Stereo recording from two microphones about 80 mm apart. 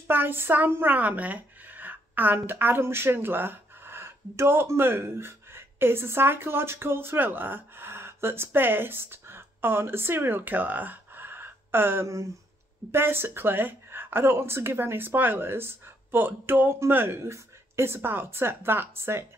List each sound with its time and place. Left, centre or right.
0.1 s speech: right